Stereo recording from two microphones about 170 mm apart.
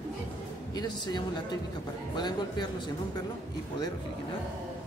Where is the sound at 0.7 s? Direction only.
25° left (ahead or behind).